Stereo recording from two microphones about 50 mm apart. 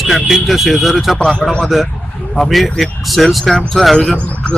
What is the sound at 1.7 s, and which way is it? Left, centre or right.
Speech, centre.